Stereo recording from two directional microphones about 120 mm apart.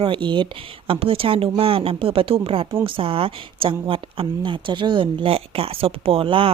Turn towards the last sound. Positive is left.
turn(degrees=-50)  # may be behind; listen again after turning